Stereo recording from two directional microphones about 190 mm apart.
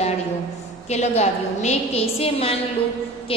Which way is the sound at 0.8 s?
35° left (ahead or behind).